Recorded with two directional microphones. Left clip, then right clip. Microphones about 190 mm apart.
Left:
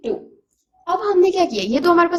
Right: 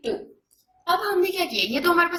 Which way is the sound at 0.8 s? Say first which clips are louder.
Left 6 dB; 45° left (ahead or behind).